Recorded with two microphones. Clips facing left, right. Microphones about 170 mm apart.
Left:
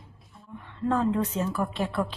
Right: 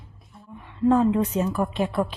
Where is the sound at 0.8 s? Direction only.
15° right (ahead or behind).